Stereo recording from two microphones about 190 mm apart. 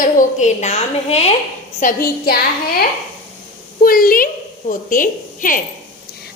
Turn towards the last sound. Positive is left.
turn(degrees=45)  # may be behind; listen again after turning